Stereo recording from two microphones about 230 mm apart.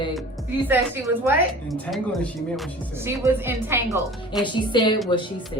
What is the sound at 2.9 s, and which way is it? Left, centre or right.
A woman's voice, centre.